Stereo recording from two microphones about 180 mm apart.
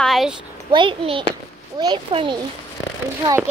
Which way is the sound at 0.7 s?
30° right (ahead or behind).